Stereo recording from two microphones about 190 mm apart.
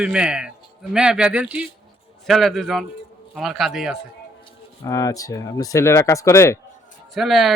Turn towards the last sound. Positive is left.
turn(degrees=0)  # may be behind; listen again after turning